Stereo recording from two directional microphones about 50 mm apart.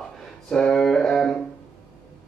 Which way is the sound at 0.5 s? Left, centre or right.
Centre.